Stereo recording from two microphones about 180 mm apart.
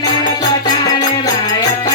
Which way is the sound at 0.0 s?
25° left (ahead or behind).